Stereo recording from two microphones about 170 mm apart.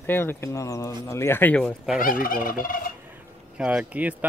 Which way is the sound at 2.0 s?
55° left (ahead or behind).